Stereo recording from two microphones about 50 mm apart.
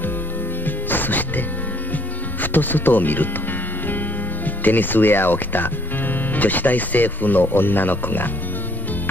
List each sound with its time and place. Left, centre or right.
0.7 s music: left
2.4 s speech: left
4.6 s speech: left